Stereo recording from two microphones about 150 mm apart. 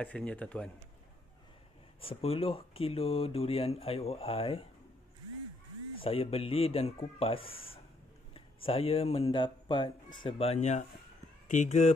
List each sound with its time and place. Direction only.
0.0 s speech: 10° left (ahead or behind)
2.0 s speech: 40° left (ahead or behind)
5.9 s speech: 40° left (ahead or behind)
8.6 s speech: 40° left (ahead or behind)
10.2 s speech: 40° left (ahead or behind)